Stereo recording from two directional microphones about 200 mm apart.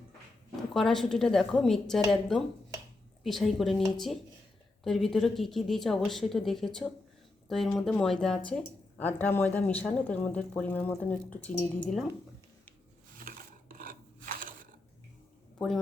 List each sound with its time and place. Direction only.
0.7 s a woman's voice: centre (ahead or behind)
13.1 s filing: 45° right (ahead or behind)
15.5 s a man's voice: centre (ahead or behind)